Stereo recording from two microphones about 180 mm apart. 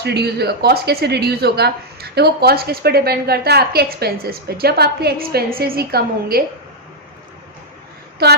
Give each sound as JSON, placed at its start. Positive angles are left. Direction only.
{"t": 0.0, "sound": "speech", "side_deg": -65}
{"t": 8.2, "sound": "speech", "side_deg": -60}